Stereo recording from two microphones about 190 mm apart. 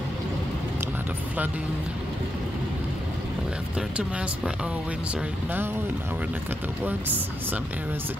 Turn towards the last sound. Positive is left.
turn(degrees=-10)  # may be behind; listen again after turning